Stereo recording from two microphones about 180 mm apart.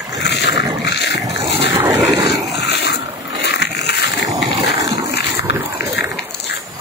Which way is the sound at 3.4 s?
70° left (ahead or behind).